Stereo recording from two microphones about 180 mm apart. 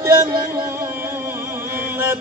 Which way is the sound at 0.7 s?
15° right (ahead or behind).